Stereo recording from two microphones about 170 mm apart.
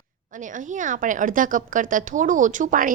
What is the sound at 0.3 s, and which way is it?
A woman's voice, 50° right (ahead or behind).